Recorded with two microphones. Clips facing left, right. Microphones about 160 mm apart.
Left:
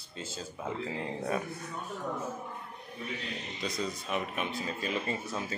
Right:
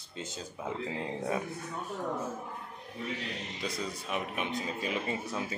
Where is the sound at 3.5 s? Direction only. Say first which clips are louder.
Left 3 dB; 10° right (ahead or behind).